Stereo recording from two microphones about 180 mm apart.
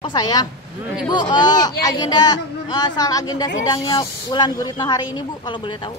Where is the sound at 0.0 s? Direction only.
20° left (ahead or behind).